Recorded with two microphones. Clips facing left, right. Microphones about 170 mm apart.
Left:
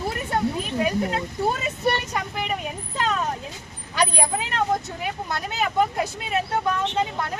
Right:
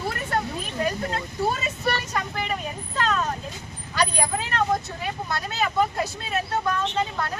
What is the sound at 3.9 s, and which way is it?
Speech, 20° left (ahead or behind).